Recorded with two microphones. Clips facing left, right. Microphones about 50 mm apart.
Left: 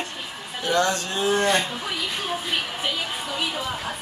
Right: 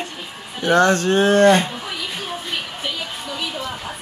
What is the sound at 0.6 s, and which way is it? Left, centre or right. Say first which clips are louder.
Speech: right 7 dB; right.